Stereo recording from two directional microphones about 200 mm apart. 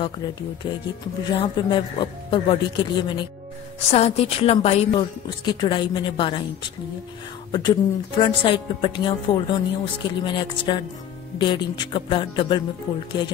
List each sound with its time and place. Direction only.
0.6 s a woman's voice: 20° left (ahead or behind)
7.5 s a woman's voice: 20° left (ahead or behind)